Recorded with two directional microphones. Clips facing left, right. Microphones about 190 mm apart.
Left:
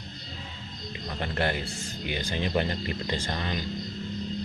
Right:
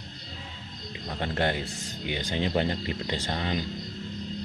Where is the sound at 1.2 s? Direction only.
20° right (ahead or behind).